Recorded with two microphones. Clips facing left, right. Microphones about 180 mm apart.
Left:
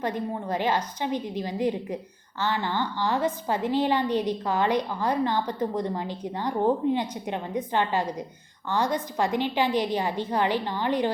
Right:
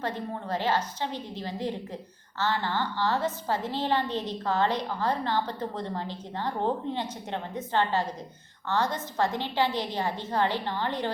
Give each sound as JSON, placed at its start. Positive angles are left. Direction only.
{"t": 0.0, "sound": "a woman's voice", "side_deg": 15}